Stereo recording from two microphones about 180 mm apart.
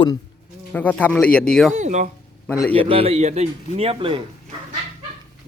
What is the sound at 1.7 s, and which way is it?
Speech, 40° right (ahead or behind).